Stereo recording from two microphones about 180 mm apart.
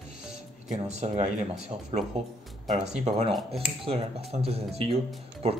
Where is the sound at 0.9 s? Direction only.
40° right (ahead or behind).